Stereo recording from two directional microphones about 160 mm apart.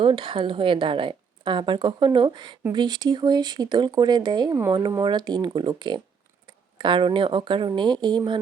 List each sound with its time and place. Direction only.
0.0 s a woman's voice: 35° right (ahead or behind)